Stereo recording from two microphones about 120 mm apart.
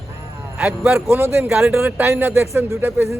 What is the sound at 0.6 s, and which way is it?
Speech, 10° right (ahead or behind).